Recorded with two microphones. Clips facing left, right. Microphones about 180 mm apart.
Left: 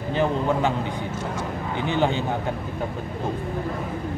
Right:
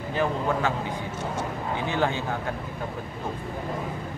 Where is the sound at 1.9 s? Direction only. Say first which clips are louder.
Left 4 dB; 20° left (ahead or behind).